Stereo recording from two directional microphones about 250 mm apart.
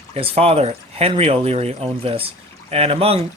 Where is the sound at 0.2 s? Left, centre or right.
Right.